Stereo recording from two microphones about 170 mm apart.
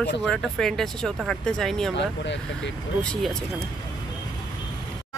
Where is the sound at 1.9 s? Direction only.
90° left.